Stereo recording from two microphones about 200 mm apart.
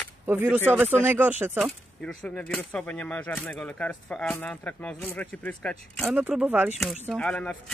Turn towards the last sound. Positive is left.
turn(degrees=5)  # may be behind; listen again after turning